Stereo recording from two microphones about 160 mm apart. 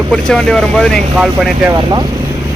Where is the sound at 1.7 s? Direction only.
25° right (ahead or behind).